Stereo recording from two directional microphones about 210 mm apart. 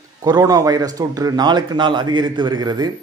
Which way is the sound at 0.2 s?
20° right (ahead or behind).